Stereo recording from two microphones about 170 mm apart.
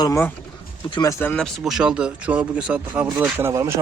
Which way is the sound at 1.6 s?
5° right (ahead or behind).